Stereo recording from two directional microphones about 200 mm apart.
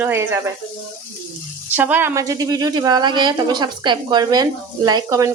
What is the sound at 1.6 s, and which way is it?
A woman's voice, 10° right (ahead or behind).